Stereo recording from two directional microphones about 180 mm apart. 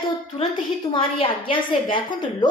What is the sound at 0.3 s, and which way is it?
A woman's voice, 30° left (ahead or behind).